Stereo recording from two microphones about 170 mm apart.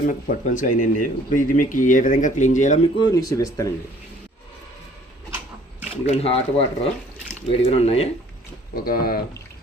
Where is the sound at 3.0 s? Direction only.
25° left (ahead or behind).